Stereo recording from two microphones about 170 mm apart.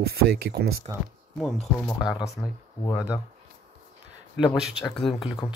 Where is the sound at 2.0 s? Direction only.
25° left (ahead or behind).